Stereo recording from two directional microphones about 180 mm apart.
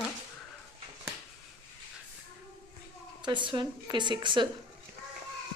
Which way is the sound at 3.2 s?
25° right (ahead or behind).